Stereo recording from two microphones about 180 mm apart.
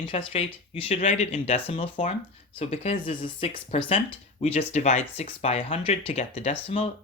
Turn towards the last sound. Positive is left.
turn(degrees=35)  # may be behind; listen again after turning